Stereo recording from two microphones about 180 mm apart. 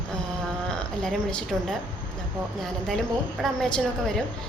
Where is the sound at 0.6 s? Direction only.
5° left (ahead or behind).